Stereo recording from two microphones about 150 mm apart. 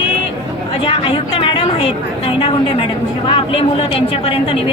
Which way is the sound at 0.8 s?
35° left (ahead or behind).